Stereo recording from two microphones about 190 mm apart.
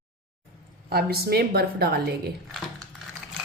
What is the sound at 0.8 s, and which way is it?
A woman's voice, 55° right (ahead or behind).